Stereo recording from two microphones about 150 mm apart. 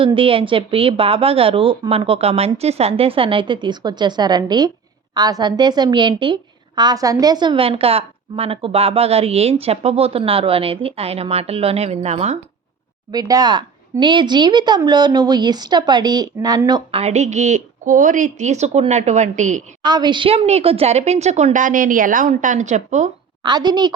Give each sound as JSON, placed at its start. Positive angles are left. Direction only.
{"t": 0.0, "sound": "a woman's voice", "side_deg": -35}
{"t": 13.1, "sound": "speech", "side_deg": -25}
{"t": 17.0, "sound": "a woman's voice", "side_deg": -50}
{"t": 19.8, "sound": "a woman's voice", "side_deg": -30}
{"t": 23.4, "sound": "speech", "side_deg": -30}